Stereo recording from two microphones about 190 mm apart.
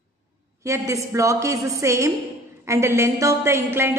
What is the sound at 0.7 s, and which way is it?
A woman's voice, 15° right (ahead or behind).